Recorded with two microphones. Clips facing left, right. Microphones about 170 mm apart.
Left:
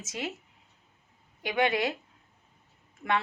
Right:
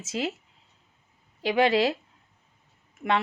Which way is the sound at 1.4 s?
30° right (ahead or behind).